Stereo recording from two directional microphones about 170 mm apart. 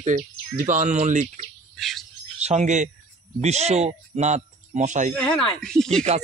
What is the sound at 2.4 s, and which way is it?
Speech, 40° right (ahead or behind).